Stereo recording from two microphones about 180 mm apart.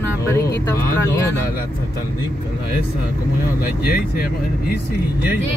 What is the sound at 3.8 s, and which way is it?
Speech, 55° left (ahead or behind).